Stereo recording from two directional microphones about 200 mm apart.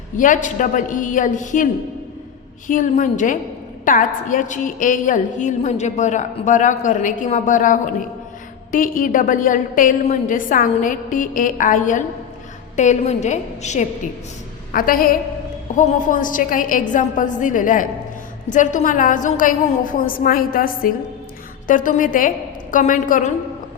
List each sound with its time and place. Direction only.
0.2 s a woman's voice: 40° left (ahead or behind)
2.6 s a woman's voice: 40° left (ahead or behind)